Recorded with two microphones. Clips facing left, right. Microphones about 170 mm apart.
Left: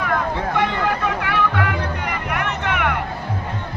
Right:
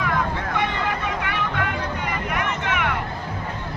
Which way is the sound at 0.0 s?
60° left (ahead or behind).